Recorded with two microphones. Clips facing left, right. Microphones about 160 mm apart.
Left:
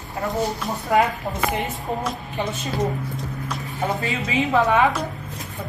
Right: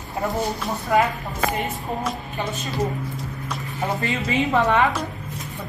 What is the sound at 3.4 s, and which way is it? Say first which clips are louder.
A woman's voice: left 1 dB; centre (ahead or behind).